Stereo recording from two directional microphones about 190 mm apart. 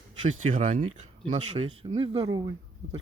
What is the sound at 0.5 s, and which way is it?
Speech, 40° right (ahead or behind).